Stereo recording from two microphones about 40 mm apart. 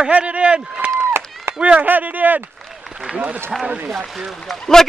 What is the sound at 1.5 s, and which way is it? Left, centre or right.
Run, right.